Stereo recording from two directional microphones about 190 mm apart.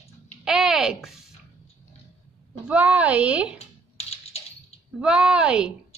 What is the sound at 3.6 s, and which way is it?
Typing, 35° left (ahead or behind).